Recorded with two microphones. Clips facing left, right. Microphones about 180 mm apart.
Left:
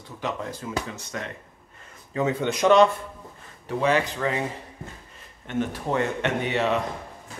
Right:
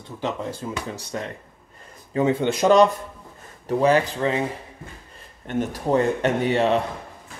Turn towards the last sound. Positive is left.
turn(degrees=-35)  # may be behind; listen again after turning